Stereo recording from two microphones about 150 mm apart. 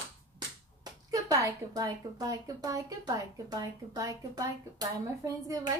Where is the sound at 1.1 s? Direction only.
20° right (ahead or behind).